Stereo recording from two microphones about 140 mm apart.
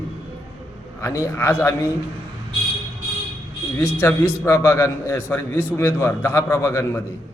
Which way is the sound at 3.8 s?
15° left (ahead or behind).